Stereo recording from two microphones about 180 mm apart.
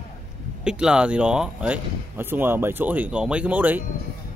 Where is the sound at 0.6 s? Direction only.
5° right (ahead or behind).